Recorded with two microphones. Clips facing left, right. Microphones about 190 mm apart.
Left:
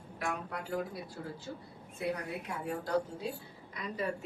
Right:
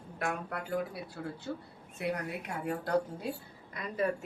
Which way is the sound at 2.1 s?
60° right (ahead or behind).